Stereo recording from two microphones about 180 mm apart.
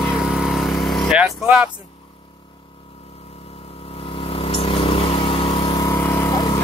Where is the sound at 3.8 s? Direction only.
30° left (ahead or behind).